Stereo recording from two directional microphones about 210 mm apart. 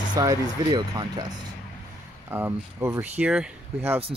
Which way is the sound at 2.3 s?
10° right (ahead or behind).